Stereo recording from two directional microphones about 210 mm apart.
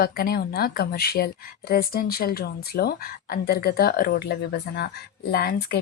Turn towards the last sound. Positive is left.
turn(degrees=45)  # may be behind; listen again after turning